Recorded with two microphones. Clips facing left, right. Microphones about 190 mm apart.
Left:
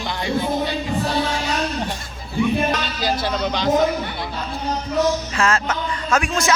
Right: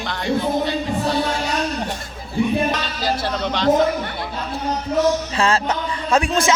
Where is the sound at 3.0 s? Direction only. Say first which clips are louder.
Even; centre (ahead or behind).